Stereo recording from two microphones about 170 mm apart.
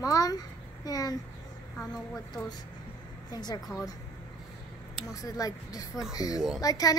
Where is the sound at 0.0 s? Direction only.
20° left (ahead or behind).